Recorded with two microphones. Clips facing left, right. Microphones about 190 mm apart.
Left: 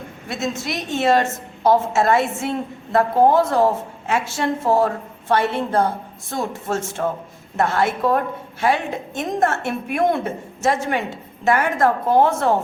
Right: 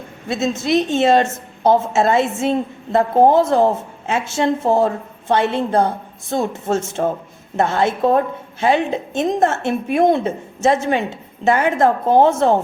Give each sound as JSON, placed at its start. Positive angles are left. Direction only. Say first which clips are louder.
{"t": 0.3, "sound": "a woman's voice", "louder": "right 7 dB", "side_deg": -25}